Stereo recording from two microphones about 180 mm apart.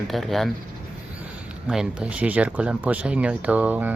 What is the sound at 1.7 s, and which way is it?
Speech, 5° right (ahead or behind).